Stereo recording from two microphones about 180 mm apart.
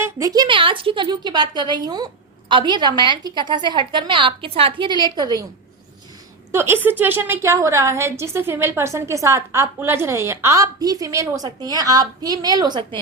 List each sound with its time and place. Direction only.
0.0 s a woman's voice: 20° right (ahead or behind)
6.5 s a woman's voice: 15° right (ahead or behind)